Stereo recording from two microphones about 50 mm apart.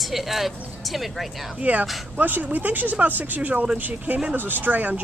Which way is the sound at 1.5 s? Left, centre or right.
Right.